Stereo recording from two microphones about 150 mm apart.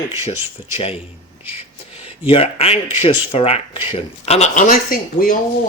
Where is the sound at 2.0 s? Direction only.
40° left (ahead or behind).